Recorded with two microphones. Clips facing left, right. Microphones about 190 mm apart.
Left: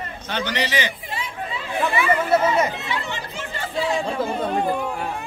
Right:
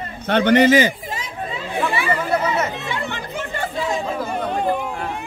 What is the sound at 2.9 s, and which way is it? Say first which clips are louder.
Chatter: right 2 dB; 55° right (ahead or behind).